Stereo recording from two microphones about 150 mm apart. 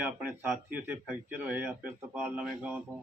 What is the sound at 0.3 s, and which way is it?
Speech, 10° right (ahead or behind).